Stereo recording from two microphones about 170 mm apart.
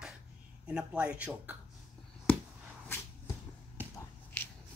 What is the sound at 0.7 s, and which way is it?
Speech, 5° right (ahead or behind).